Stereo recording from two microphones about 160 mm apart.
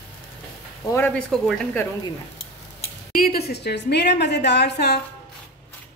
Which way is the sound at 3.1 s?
70° left (ahead or behind).